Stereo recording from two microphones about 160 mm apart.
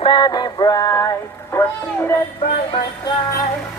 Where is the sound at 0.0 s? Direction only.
30° left (ahead or behind).